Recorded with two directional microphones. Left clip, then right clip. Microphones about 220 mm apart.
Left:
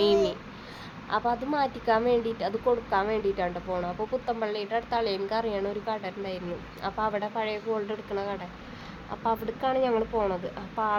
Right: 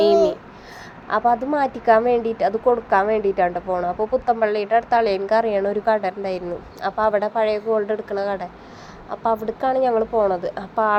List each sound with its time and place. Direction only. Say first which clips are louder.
1.1 s speech: right 8 dB; 10° right (ahead or behind)
10.3 s a woman's voice: right 9 dB; 20° right (ahead or behind)